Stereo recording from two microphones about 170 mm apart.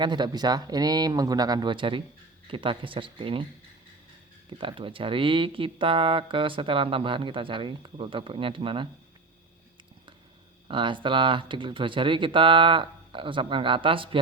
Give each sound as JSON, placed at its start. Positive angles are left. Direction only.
{"t": 0.0, "sound": "speech", "side_deg": -25}
{"t": 4.5, "sound": "speech", "side_deg": -30}
{"t": 10.7, "sound": "speech", "side_deg": -30}